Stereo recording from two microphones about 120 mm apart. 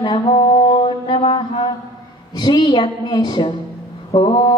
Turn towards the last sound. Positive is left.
turn(degrees=45)  # may be behind; listen again after turning